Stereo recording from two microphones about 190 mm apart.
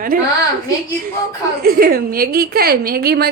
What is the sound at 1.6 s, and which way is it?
A woman's voice, 55° right (ahead or behind).